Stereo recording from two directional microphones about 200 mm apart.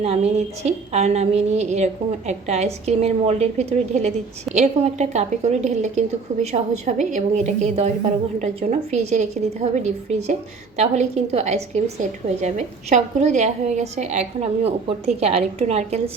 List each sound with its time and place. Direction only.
0.0 s a woman's voice: 30° right (ahead or behind)